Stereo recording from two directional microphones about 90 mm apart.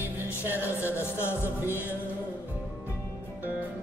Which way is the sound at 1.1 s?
30° left (ahead or behind).